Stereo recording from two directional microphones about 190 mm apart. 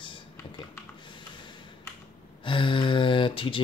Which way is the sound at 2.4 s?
25° left (ahead or behind).